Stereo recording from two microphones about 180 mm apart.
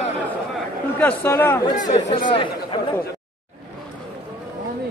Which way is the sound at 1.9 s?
40° left (ahead or behind).